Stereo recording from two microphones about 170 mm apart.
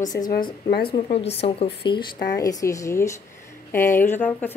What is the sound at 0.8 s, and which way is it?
Speech, 35° left (ahead or behind).